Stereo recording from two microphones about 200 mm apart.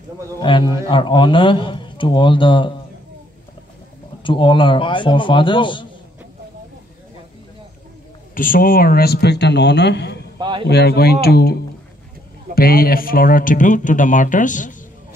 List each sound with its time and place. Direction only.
0.4 s a man's voice: 25° left (ahead or behind)
4.2 s a man's voice: 25° left (ahead or behind)
8.4 s speech: 45° left (ahead or behind)
10.4 s speech: 25° right (ahead or behind)
10.7 s speech: 55° left (ahead or behind)